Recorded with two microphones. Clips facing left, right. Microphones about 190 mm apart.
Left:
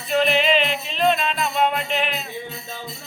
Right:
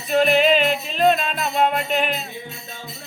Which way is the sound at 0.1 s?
45° right (ahead or behind).